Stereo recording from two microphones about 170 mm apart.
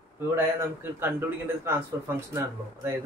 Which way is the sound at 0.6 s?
15° right (ahead or behind).